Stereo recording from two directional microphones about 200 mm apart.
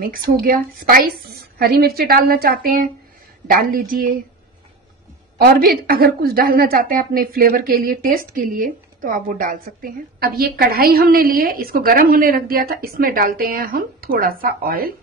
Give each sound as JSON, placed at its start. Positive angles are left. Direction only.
{"t": 0.4, "sound": "a woman's voice", "side_deg": -45}
{"t": 5.4, "sound": "a woman's voice", "side_deg": -50}